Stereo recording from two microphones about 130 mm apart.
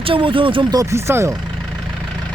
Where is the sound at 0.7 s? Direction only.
25° right (ahead or behind).